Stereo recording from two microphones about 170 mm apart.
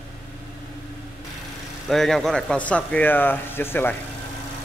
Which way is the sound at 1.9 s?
Centre (ahead or behind).